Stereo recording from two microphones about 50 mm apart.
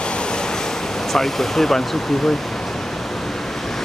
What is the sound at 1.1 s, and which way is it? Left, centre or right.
Speech, centre.